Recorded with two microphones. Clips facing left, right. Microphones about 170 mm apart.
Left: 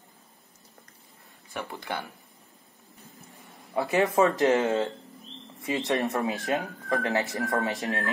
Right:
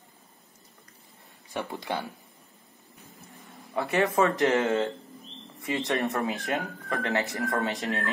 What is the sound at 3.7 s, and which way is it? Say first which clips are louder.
Speech: left 1 dB; 20° left (ahead or behind).